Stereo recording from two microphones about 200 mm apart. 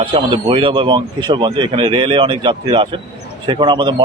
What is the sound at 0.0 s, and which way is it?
Speech, 25° right (ahead or behind).